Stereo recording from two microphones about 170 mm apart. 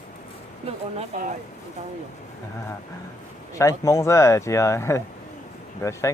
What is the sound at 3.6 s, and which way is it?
Speech, 20° left (ahead or behind).